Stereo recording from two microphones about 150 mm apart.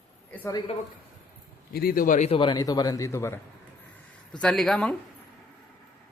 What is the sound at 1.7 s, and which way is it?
Speech, 85° left.